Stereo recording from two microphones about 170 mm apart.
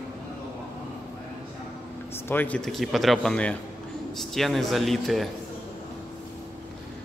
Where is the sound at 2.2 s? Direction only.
10° left (ahead or behind).